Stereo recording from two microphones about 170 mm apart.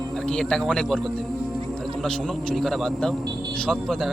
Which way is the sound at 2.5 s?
Centre (ahead or behind).